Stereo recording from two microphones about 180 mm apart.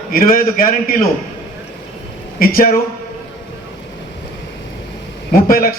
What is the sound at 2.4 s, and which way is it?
Speech, 50° left (ahead or behind).